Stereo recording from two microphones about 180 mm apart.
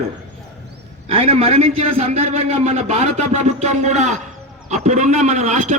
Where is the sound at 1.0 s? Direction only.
35° right (ahead or behind).